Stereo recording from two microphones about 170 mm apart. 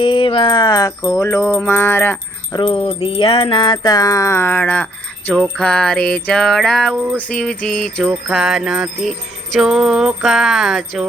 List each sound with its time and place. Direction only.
0.0 s music: 30° left (ahead or behind); by 2.1 s 15° left (ahead or behind)
2.5 s jingle bell: 30° left (ahead or behind); by 11.0 s centre (ahead or behind)